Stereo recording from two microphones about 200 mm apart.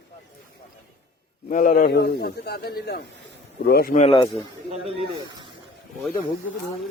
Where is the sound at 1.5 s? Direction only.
40° left (ahead or behind).